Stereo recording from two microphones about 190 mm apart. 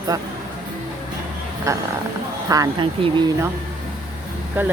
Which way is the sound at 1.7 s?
15° right (ahead or behind).